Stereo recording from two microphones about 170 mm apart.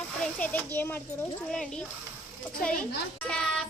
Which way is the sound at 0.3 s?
10° left (ahead or behind).